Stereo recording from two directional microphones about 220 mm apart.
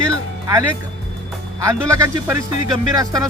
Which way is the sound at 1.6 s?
15° right (ahead or behind).